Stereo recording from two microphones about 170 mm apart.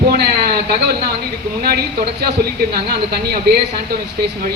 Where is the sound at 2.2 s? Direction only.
70° right (ahead or behind).